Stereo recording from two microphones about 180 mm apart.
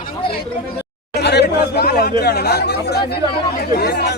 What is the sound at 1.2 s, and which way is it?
Speech, 70° left (ahead or behind).